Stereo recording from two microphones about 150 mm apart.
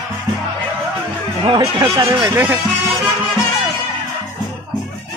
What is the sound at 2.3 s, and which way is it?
Speech, 15° right (ahead or behind).